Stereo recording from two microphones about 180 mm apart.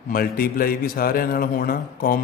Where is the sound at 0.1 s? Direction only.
55° left (ahead or behind).